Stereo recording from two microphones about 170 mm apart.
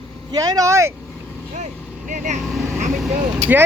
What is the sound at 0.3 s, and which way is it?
Speech, 20° right (ahead or behind).